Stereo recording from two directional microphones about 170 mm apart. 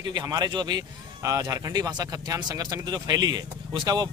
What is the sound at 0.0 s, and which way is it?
Speech, 25° right (ahead or behind).